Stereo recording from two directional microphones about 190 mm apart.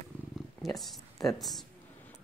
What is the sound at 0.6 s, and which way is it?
Speech, centre (ahead or behind).